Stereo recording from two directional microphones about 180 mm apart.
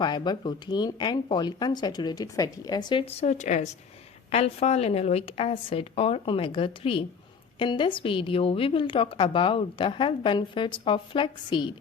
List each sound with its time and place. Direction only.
0.0 s a woman's voice: 25° left (ahead or behind)